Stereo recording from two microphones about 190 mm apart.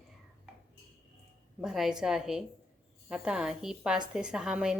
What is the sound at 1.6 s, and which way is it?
A woman's voice, centre (ahead or behind).